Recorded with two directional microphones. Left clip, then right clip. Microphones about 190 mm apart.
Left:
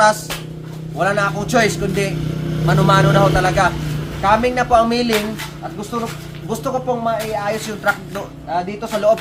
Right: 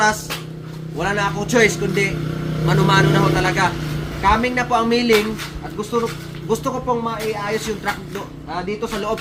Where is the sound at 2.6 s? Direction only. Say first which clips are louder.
Left 2 dB; 15° left (ahead or behind).